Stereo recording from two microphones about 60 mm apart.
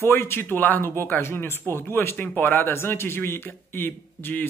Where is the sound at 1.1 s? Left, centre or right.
Left.